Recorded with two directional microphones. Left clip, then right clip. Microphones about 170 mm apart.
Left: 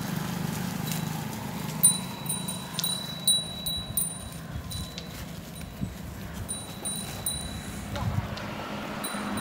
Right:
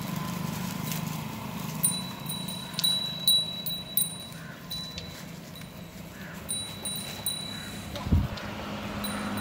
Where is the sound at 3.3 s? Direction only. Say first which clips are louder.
Right 2 dB; 55° left (ahead or behind).